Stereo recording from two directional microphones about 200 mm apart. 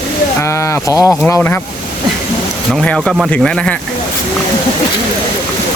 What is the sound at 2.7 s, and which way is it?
Speech, 5° left (ahead or behind).